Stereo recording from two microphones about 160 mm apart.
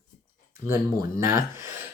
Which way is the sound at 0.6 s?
20° right (ahead or behind).